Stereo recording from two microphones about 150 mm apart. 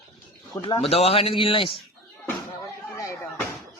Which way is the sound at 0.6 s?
35° left (ahead or behind).